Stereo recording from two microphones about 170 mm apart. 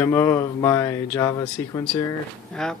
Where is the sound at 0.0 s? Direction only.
15° left (ahead or behind).